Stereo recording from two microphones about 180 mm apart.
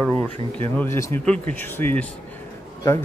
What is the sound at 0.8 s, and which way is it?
Speech, 15° left (ahead or behind).